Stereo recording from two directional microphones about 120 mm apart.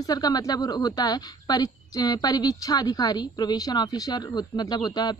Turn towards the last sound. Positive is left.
turn(degrees=35)  # may be behind; listen again after turning